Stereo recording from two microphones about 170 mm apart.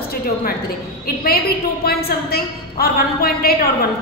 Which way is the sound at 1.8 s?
65° left (ahead or behind).